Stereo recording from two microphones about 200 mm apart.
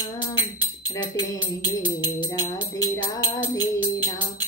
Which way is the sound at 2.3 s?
20° left (ahead or behind).